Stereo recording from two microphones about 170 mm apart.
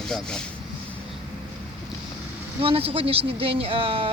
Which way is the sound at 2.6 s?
35° right (ahead or behind).